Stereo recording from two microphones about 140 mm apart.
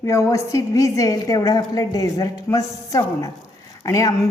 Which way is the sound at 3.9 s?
25° left (ahead or behind).